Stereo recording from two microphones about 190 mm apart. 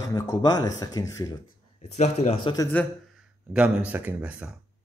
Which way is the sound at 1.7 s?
35° left (ahead or behind).